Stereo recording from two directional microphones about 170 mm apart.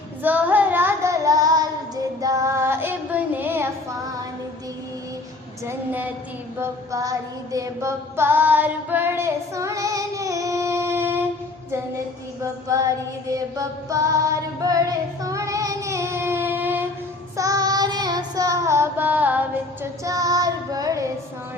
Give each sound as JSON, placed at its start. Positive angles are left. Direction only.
{"t": 0.2, "sound": "child singing", "side_deg": -10}
{"t": 5.6, "sound": "a woman's voice", "side_deg": -10}
{"t": 6.6, "sound": "female singing", "side_deg": -20}
{"t": 12.6, "sound": "a sound", "side_deg": -20}
{"t": 13.3, "sound": "mantra", "side_deg": -20}
{"t": 14.6, "sound": "child singing", "side_deg": -20}